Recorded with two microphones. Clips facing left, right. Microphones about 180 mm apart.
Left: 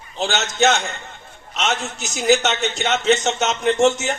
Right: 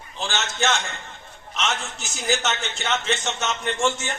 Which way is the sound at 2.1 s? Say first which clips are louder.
Left 8 dB; 70° left (ahead or behind).